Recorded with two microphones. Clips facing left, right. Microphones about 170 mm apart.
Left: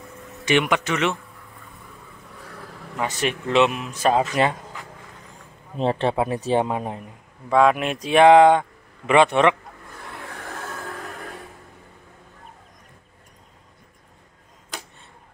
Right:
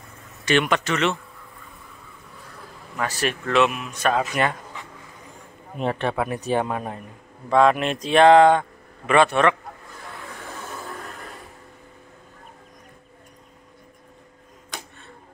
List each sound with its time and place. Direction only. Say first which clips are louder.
0.5 s speech: even; 15° left (ahead or behind)
3.0 s speech: left 1 dB; 20° left (ahead or behind)
5.8 s speech: left 3 dB; 30° left (ahead or behind)
7.4 s speech: even; 10° left (ahead or behind)